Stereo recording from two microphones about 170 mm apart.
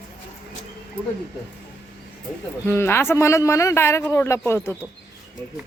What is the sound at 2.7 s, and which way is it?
A man's voice, 15° left (ahead or behind).